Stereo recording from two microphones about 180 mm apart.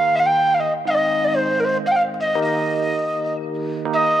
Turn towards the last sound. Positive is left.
turn(degrees=0)  # may be behind; listen again after turning